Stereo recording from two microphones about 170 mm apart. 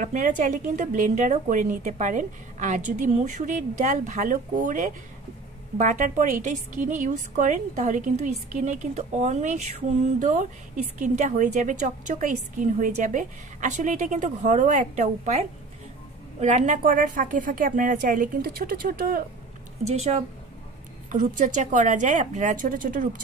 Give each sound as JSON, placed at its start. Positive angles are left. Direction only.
{"t": 0.0, "sound": "a woman's voice", "side_deg": -50}
{"t": 19.8, "sound": "a woman's voice", "side_deg": -40}